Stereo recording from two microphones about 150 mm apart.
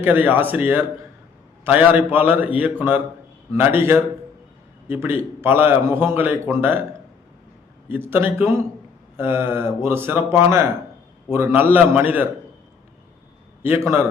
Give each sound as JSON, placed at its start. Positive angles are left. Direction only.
{"t": 0.0, "sound": "a man's voice", "side_deg": -15}
{"t": 8.1, "sound": "a man's voice", "side_deg": -15}
{"t": 13.6, "sound": "a man's voice", "side_deg": -15}